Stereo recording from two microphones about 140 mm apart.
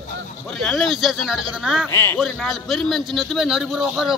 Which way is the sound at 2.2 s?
Centre (ahead or behind).